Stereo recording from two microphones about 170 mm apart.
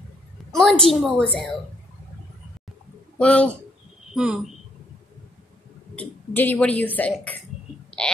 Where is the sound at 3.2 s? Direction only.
5° left (ahead or behind).